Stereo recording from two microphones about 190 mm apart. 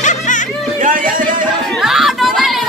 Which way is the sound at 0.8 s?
45° right (ahead or behind).